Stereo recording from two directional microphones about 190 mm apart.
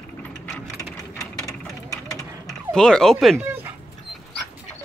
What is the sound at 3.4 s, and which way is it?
Dog, 10° right (ahead or behind).